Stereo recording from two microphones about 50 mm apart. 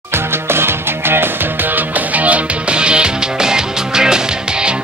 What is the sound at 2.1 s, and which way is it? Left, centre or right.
Music, right.